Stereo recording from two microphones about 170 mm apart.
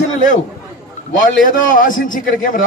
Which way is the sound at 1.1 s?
50° left (ahead or behind).